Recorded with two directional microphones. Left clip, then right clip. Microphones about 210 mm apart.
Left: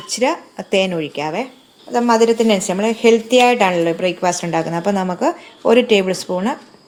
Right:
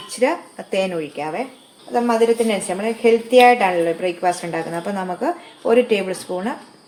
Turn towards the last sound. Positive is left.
turn(degrees=40)  # may be behind; listen again after turning